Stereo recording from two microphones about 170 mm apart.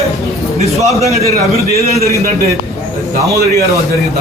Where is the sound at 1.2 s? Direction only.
40° left (ahead or behind).